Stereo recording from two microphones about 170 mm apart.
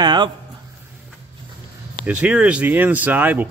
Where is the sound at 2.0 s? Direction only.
5° right (ahead or behind).